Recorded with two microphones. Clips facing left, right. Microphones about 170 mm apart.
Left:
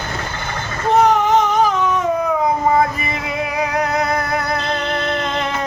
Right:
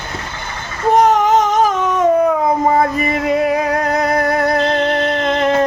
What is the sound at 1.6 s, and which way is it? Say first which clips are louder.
Baby cry: right 1 dB; 45° right (ahead or behind).